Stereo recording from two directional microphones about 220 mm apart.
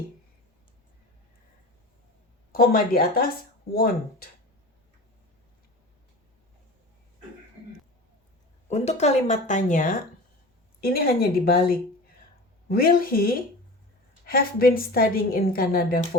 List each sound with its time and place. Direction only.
2.5 s a woman's voice: 40° left (ahead or behind)
8.7 s a woman's voice: 30° left (ahead or behind)